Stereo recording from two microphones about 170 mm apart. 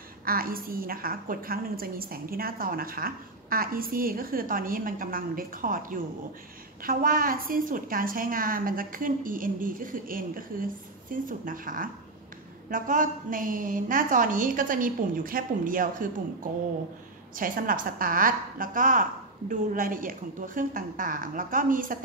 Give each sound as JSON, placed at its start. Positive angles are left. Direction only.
{"t": 0.2, "sound": "a woman's voice", "side_deg": -60}
{"t": 17.4, "sound": "a woman's voice", "side_deg": -55}